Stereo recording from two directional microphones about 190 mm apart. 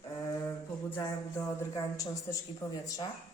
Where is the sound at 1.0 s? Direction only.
15° left (ahead or behind).